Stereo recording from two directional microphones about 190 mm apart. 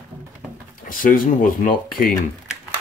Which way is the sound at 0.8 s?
45° left (ahead or behind).